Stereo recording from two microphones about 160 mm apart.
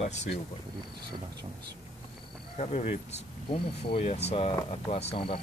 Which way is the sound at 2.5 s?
45° left (ahead or behind).